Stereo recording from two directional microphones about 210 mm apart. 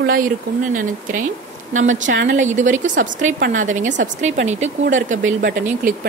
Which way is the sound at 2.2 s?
35° right (ahead or behind).